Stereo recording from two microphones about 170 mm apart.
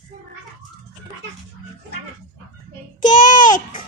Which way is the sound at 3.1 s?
50° left (ahead or behind).